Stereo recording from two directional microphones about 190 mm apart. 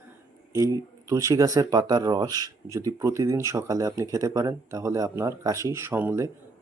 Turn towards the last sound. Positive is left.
turn(degrees=-10)  # may be behind; listen again after turning